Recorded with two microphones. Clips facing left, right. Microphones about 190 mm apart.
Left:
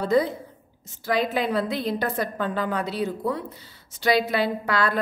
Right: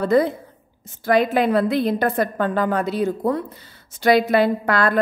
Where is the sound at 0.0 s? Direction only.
55° right (ahead or behind).